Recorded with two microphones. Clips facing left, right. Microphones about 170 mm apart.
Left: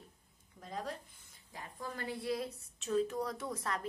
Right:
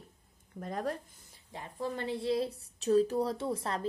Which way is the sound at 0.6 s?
55° right (ahead or behind).